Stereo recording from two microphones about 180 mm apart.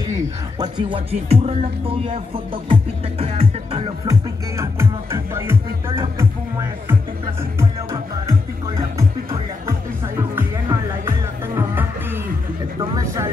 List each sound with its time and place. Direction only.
0.0 s music: 20° right (ahead or behind)
12.9 s vehicle: 15° right (ahead or behind)